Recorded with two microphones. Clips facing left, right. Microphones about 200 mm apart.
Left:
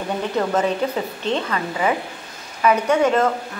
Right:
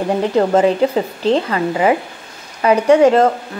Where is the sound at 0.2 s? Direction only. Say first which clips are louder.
Right 7 dB; 30° right (ahead or behind).